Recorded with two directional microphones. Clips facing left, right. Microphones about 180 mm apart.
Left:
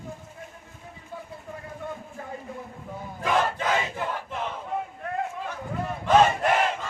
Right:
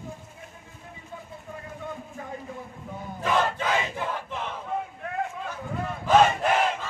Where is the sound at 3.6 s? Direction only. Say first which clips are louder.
Left 1 dB; 5° left (ahead or behind).